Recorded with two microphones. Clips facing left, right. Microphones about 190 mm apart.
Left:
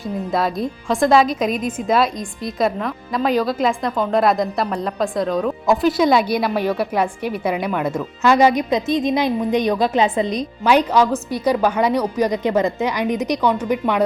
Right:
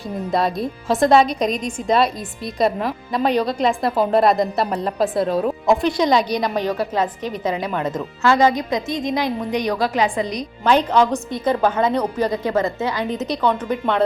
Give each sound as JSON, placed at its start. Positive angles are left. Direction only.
{"t": 0.0, "sound": "a woman's voice", "side_deg": 0}
{"t": 10.6, "sound": "a woman's voice", "side_deg": 10}